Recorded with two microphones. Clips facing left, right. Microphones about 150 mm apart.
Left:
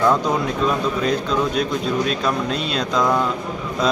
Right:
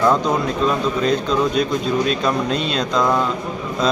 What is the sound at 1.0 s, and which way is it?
Speech, 5° left (ahead or behind).